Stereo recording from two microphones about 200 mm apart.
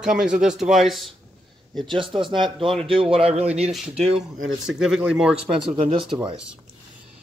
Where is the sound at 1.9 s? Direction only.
25° right (ahead or behind).